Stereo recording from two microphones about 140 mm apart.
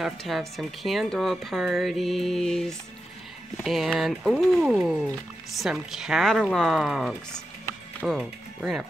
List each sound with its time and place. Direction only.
0.0 s speech: centre (ahead or behind)